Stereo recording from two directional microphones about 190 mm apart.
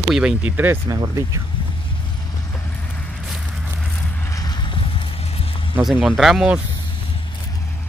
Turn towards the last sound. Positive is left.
turn(degrees=-5)  # may be behind; listen again after turning